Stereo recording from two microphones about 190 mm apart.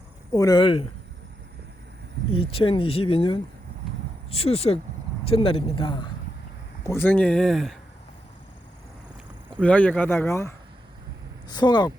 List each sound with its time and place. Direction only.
0.3 s speech: 20° left (ahead or behind)
2.3 s speech: 30° left (ahead or behind)
6.8 s speech: 10° left (ahead or behind)
9.6 s speech: 5° left (ahead or behind); by 11.9 s 20° left (ahead or behind)